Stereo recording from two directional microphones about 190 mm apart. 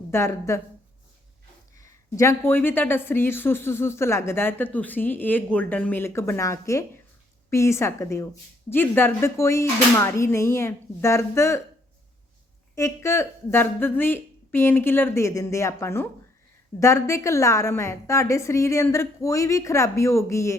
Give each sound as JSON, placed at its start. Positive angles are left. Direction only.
{"t": 0.1, "sound": "a woman's voice", "side_deg": 15}
{"t": 1.8, "sound": "a woman's voice", "side_deg": 15}
{"t": 12.7, "sound": "a woman's voice", "side_deg": 15}